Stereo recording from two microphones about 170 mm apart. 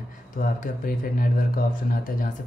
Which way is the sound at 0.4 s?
55° left (ahead or behind).